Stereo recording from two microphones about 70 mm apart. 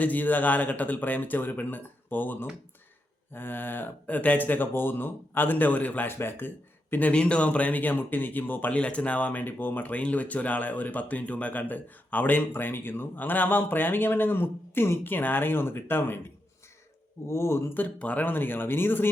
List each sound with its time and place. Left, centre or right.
0.0 s speech: left
7.1 s speech: centre; by 16.2 s left
17.2 s speech: left
17.7 s speech: left